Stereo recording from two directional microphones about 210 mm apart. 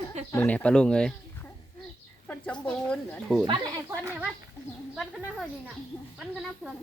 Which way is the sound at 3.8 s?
10° right (ahead or behind).